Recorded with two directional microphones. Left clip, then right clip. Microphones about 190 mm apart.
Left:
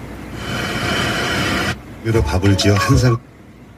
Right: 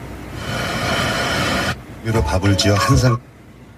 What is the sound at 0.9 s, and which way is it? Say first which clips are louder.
Train: even; 35° right (ahead or behind).